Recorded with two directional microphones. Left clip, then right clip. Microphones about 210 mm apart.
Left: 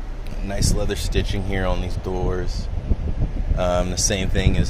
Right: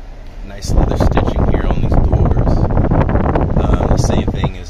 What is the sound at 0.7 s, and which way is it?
Speech, 10° left (ahead or behind).